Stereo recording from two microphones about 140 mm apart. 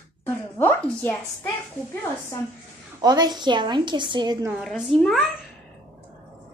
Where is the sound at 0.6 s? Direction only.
15° left (ahead or behind).